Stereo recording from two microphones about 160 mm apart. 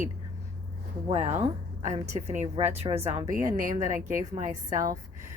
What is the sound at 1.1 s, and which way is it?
A woman's voice, 45° right (ahead or behind).